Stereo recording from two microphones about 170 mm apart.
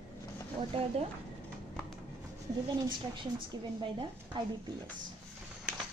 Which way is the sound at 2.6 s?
25° right (ahead or behind).